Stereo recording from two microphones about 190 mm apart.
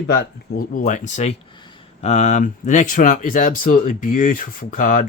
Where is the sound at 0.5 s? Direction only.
45° left (ahead or behind).